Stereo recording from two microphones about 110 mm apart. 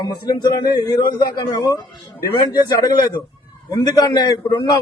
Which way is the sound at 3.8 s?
40° left (ahead or behind).